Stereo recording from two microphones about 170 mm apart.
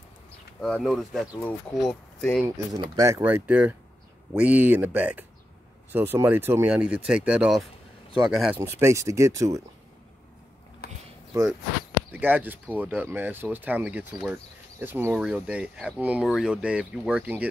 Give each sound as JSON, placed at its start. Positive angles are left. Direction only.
{"t": 0.6, "sound": "speech", "side_deg": 5}
{"t": 2.4, "sound": "speech", "side_deg": -20}
{"t": 3.2, "sound": "speech", "side_deg": -10}
{"t": 8.5, "sound": "speech", "side_deg": -15}
{"t": 10.8, "sound": "a sound", "side_deg": 65}
{"t": 12.1, "sound": "speech", "side_deg": -10}